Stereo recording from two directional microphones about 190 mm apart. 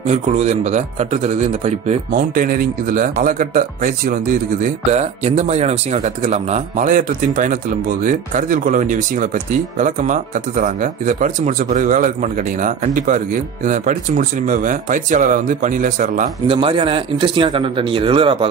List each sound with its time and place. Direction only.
0.0 s a man's voice: 35° right (ahead or behind)
16.4 s speech: 25° right (ahead or behind)